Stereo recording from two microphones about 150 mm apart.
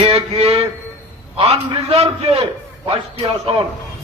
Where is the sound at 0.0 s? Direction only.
40° right (ahead or behind).